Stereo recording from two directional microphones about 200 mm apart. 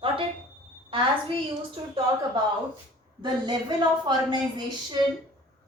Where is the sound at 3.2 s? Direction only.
20° right (ahead or behind).